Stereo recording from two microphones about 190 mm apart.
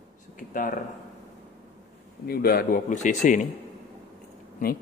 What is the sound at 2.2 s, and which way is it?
A man's voice, 55° left (ahead or behind).